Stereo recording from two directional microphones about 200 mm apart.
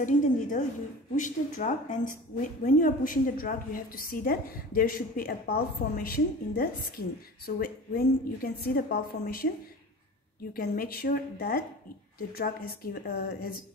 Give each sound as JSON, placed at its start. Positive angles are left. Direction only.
{"t": 0.0, "sound": "a woman's voice", "side_deg": 40}
{"t": 10.5, "sound": "a woman's voice", "side_deg": 45}